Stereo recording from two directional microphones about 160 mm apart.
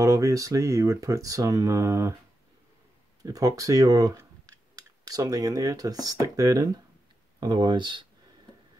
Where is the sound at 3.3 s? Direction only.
20° right (ahead or behind).